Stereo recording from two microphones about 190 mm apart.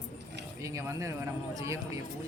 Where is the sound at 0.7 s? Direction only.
15° right (ahead or behind).